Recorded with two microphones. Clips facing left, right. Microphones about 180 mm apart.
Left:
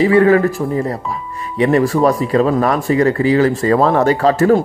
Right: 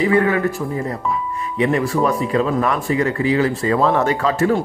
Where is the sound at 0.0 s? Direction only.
30° left (ahead or behind).